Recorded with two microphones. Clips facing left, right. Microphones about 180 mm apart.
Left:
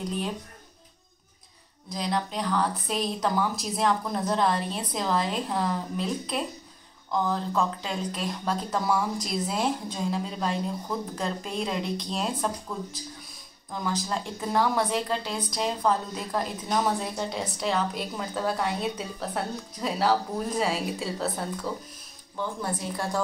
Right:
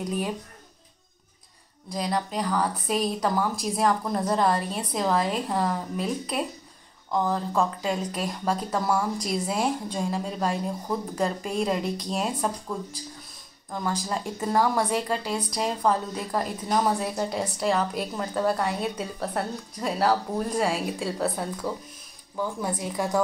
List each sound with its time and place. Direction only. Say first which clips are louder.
2.0 s a woman's voice: right 2 dB; 5° right (ahead or behind)
13.8 s a woman's voice: right 1 dB; centre (ahead or behind)
21.7 s a woman's voice: right 1 dB; 10° right (ahead or behind)